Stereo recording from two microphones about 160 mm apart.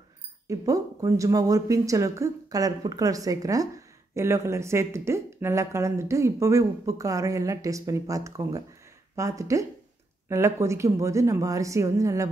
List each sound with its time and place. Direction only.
0.5 s speech: 20° right (ahead or behind)